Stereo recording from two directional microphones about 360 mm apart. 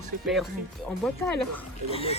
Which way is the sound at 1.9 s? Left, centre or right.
Centre.